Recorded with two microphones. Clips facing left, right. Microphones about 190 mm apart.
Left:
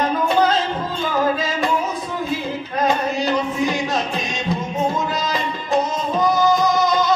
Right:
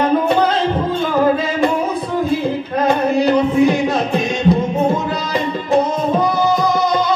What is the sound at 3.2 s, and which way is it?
Music, 60° right (ahead or behind).